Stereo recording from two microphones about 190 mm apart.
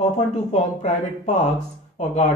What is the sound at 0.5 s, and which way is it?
A man's voice, 35° left (ahead or behind).